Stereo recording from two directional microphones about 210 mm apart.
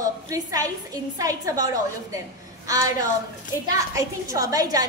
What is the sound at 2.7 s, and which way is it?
A woman's voice, 15° right (ahead or behind).